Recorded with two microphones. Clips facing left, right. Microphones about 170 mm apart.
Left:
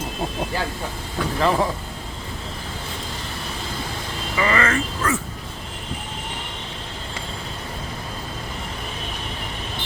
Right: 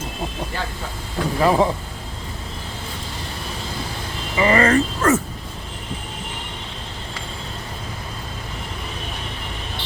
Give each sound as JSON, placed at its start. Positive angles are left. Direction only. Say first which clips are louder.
{"t": 1.4, "sound": "speech", "louder": "right 3 dB", "side_deg": -10}
{"t": 4.4, "sound": "speech", "louder": "right 5 dB", "side_deg": -30}